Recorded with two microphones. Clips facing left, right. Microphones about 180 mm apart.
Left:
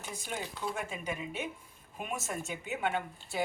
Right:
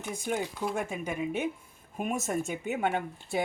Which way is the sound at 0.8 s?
50° right (ahead or behind).